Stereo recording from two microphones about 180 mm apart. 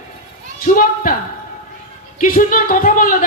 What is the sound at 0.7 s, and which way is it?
Speech, 45° left (ahead or behind).